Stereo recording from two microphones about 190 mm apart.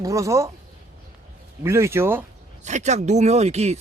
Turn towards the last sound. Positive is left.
turn(degrees=-35)  # may be behind; listen again after turning